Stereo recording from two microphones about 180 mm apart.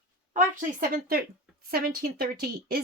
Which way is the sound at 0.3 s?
50° right (ahead or behind).